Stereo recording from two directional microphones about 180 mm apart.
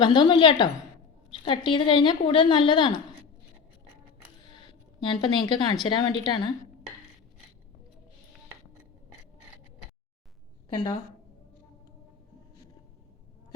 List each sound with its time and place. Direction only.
0.0 s a woman's voice: 25° left (ahead or behind)
4.9 s a woman's voice: 25° left (ahead or behind)
10.7 s a woman's voice: 25° left (ahead or behind)